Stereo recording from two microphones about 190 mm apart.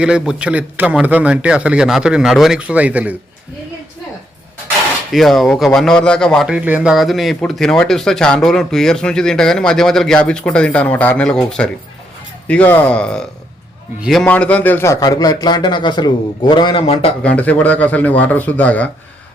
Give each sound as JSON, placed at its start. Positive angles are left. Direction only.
{"t": 0.0, "sound": "a man's voice", "side_deg": -5}
{"t": 5.1, "sound": "a man's voice", "side_deg": 0}
{"t": 17.2, "sound": "speech", "side_deg": 5}